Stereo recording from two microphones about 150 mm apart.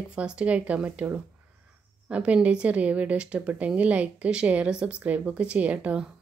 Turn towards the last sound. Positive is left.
turn(degrees=-10)  # may be behind; listen again after turning